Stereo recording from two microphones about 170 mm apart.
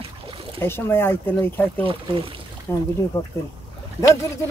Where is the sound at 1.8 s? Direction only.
30° right (ahead or behind).